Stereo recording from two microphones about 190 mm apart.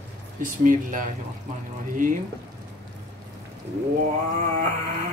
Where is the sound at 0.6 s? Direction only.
45° right (ahead or behind).